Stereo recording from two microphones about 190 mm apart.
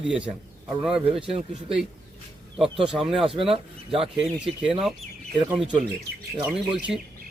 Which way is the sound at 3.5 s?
30° right (ahead or behind).